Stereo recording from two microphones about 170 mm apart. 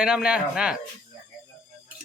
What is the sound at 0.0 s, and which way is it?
Speech, 5° right (ahead or behind).